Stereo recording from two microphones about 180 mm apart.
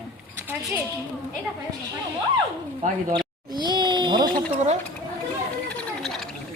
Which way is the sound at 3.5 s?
25° right (ahead or behind).